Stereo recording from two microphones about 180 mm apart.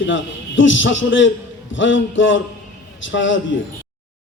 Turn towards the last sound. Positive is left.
turn(degrees=90)